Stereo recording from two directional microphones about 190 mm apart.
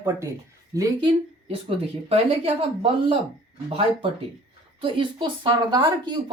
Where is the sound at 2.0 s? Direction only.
30° right (ahead or behind).